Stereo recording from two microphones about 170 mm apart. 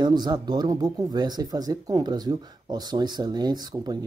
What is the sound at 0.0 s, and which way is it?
Speech, 25° right (ahead or behind).